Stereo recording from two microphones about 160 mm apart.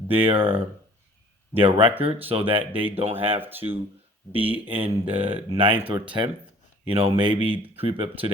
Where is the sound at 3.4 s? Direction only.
10° right (ahead or behind).